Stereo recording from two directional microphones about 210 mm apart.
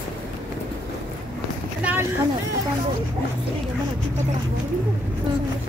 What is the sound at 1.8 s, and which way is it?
Boat, 10° right (ahead or behind).